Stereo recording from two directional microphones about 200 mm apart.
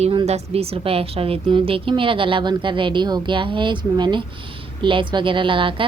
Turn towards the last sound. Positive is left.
turn(degrees=-25)  # may be behind; listen again after turning